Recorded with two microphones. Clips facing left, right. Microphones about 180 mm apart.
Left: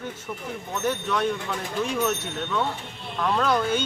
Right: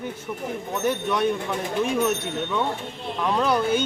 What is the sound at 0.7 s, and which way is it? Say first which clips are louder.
Speech: right 2 dB; 15° right (ahead or behind).